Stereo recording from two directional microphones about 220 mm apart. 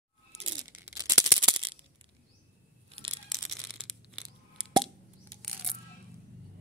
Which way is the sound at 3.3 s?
Centre (ahead or behind).